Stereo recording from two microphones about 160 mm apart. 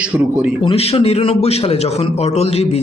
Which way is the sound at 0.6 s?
35° left (ahead or behind).